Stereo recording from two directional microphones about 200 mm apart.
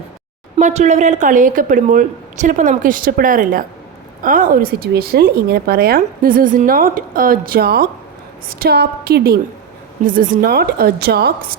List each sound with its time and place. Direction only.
0.6 s a woman's voice: 35° right (ahead or behind); by 11.3 s 50° right (ahead or behind)